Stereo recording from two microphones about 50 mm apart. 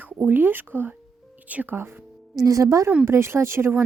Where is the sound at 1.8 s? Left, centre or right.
Right.